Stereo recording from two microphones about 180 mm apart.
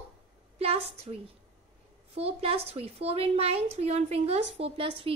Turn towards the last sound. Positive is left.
turn(degrees=-30)  # may be behind; listen again after turning